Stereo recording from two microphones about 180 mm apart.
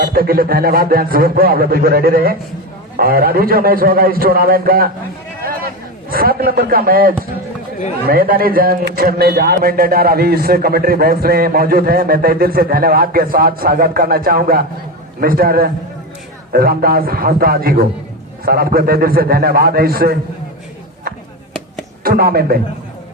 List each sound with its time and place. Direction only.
0.0 s a man's voice: 55° right (ahead or behind)
5.5 s a sound: 55° right (ahead or behind)
8.0 s a man's voice: 55° right (ahead or behind)
22.0 s speech: 55° right (ahead or behind)